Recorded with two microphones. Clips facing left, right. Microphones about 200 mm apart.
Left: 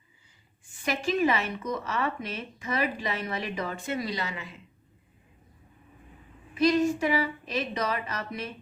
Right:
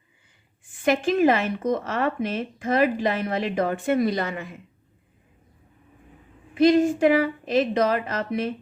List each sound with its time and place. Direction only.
0.7 s speech: 55° right (ahead or behind)
6.5 s speech: 55° right (ahead or behind)